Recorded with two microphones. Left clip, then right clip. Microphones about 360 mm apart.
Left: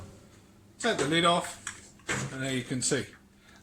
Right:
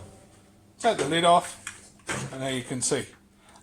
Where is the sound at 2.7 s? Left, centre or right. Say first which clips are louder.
Right 2 dB; centre.